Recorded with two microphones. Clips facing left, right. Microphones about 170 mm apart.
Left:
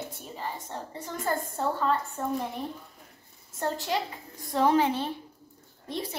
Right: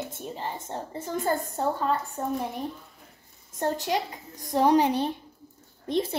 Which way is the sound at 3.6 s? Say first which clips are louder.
Right 3 dB; 20° right (ahead or behind).